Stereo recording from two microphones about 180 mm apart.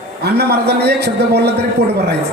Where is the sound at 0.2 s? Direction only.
65° right (ahead or behind).